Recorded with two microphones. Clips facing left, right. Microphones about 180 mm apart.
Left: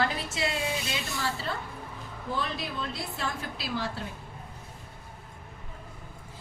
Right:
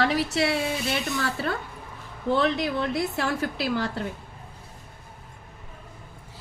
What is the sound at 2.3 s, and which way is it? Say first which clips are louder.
A woman's voice: right 10 dB; 80° right.